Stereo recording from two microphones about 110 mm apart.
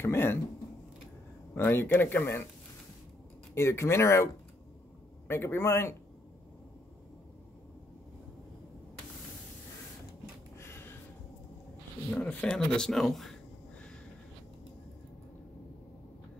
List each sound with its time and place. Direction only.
0.0 s speech: 20° left (ahead or behind)
1.5 s speech: 20° left (ahead or behind)
3.5 s speech: 25° left (ahead or behind)
5.3 s speech: 20° left (ahead or behind)
10.6 s a sound: 25° left (ahead or behind)
12.1 s speech: 10° left (ahead or behind)